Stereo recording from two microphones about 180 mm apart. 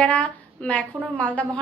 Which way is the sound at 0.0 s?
5° left (ahead or behind).